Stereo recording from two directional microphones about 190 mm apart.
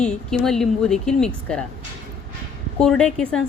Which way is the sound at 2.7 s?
5° left (ahead or behind).